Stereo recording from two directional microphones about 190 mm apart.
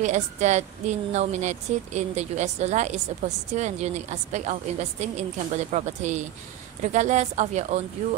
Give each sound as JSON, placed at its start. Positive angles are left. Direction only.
{"t": 0.0, "sound": "a woman's voice", "side_deg": -35}